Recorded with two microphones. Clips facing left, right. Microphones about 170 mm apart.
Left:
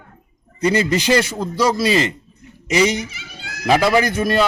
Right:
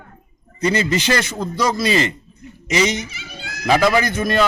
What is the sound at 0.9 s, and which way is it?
A man's voice, 10° left (ahead or behind).